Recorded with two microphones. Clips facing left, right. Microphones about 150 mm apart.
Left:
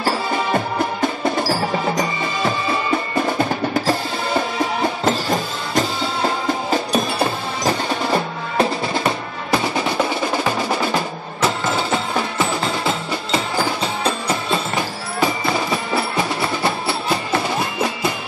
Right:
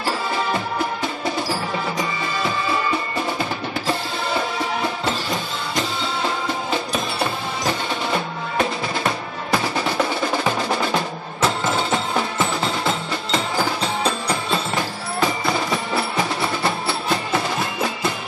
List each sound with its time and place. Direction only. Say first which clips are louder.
1.0 s music: left 5 dB; 45° left (ahead or behind)
3.3 s percussion: left 6 dB; 45° left (ahead or behind)
5.0 s music: left 5 dB; 40° left (ahead or behind)
7.6 s percussion: left 5 dB; 35° left (ahead or behind)
9.0 s music: left 2 dB; centre (ahead or behind)